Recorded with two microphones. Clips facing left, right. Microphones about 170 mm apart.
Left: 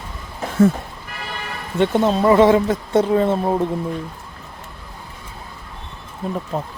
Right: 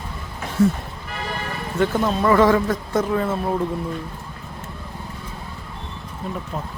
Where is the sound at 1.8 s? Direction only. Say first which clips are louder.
Left 4 dB; 25° left (ahead or behind).